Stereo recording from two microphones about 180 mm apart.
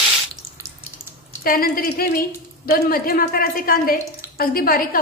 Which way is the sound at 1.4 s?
55° left (ahead or behind).